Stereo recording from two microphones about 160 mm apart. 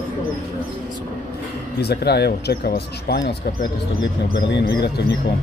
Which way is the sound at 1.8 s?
90° left.